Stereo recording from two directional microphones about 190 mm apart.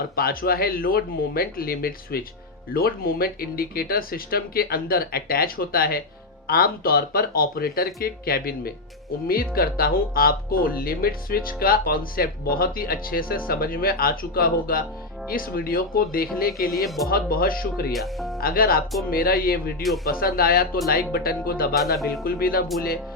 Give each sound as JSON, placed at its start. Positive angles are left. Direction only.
{"t": 0.2, "sound": "speech", "side_deg": 50}
{"t": 16.8, "sound": "speech", "side_deg": 0}
{"t": 17.1, "sound": "speech", "side_deg": 50}
{"t": 17.9, "sound": "speech", "side_deg": 0}
{"t": 18.3, "sound": "speech", "side_deg": 50}